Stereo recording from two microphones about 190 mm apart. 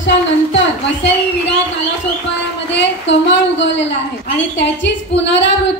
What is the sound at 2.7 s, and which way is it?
A woman's voice, 70° left (ahead or behind).